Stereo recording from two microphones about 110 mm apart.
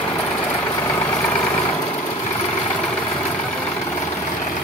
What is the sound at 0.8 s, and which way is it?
Vehicle, 25° left (ahead or behind).